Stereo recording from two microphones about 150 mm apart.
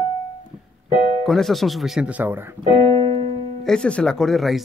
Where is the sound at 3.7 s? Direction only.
5° left (ahead or behind).